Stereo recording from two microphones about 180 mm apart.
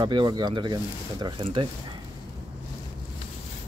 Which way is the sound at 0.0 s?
25° right (ahead or behind).